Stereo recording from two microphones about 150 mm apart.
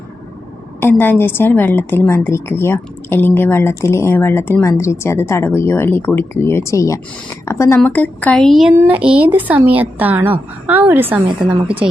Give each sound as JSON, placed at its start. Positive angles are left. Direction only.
{"t": 0.8, "sound": "a woman's voice", "side_deg": 15}